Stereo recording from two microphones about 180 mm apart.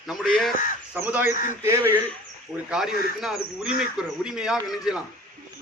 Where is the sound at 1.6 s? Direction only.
15° right (ahead or behind).